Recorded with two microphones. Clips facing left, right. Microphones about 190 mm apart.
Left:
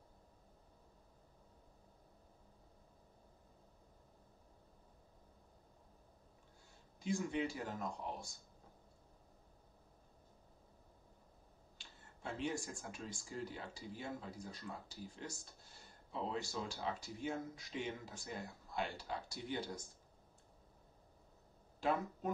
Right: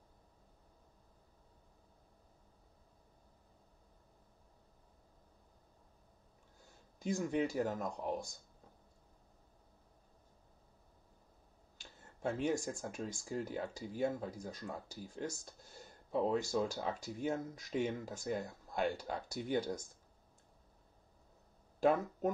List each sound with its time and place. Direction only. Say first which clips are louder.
7.0 s speech: right 4 dB; 45° right (ahead or behind)
11.8 s speech: right 10 dB; 45° right (ahead or behind)
21.7 s speech: right 6 dB; 45° right (ahead or behind)